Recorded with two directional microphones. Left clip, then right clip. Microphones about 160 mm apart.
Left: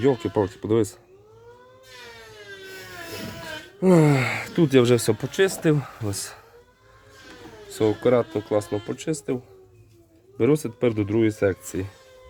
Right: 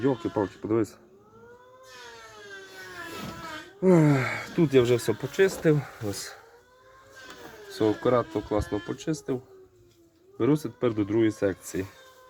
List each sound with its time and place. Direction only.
0.0 s speech: 30° left (ahead or behind)
3.9 s speech: 30° left (ahead or behind)
5.3 s speech: 25° left (ahead or behind)
7.7 s speech: 15° left (ahead or behind)